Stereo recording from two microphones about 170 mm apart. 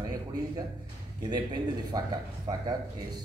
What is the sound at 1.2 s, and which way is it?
A man's voice, 25° right (ahead or behind).